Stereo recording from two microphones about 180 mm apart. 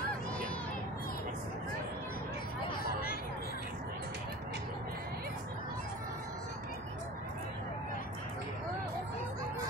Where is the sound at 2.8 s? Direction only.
55° left (ahead or behind).